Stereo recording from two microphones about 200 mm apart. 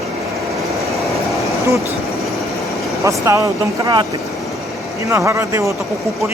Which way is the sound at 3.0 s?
15° right (ahead or behind).